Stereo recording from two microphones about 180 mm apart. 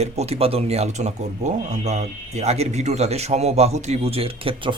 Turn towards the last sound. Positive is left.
turn(degrees=-30)  # may be behind; listen again after turning